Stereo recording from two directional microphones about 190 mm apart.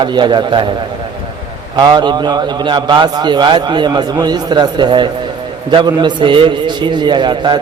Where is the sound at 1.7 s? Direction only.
20° right (ahead or behind).